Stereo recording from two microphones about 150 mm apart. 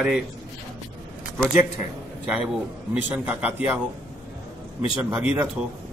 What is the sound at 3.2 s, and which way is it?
Speech, 10° right (ahead or behind).